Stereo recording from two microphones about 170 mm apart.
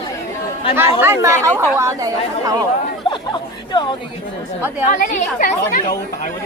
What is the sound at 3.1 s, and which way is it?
Chatter, 25° left (ahead or behind).